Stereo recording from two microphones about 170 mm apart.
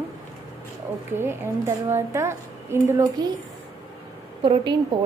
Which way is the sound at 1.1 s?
15° right (ahead or behind).